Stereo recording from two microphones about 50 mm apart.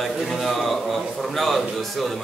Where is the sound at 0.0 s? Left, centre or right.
Centre.